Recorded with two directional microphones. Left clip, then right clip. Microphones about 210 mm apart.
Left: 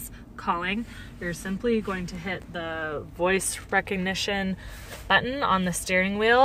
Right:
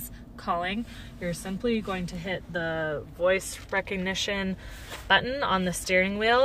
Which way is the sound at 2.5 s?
30° left (ahead or behind).